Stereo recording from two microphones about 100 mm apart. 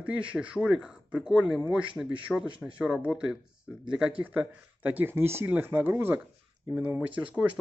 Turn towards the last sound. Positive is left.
turn(degrees=-15)  # may be behind; listen again after turning